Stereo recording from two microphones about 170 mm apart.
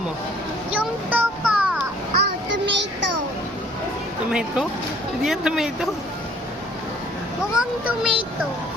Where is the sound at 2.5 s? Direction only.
90° right.